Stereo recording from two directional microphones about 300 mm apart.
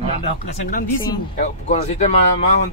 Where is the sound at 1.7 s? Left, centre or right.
Left.